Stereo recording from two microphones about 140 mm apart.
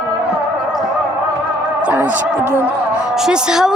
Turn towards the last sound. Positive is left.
turn(degrees=-5)  # may be behind; listen again after turning